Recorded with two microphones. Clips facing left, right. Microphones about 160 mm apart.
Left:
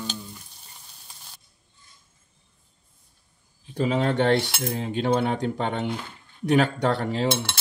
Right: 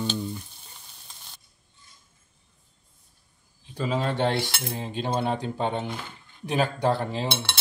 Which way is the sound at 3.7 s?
60° left (ahead or behind).